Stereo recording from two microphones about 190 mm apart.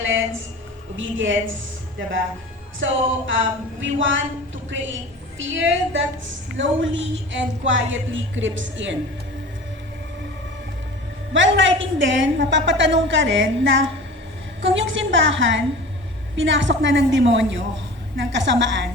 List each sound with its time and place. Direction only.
0.9 s a woman's voice: 85° right
2.8 s a woman's voice: 80° right
11.3 s a woman's voice: 75° right (ahead or behind)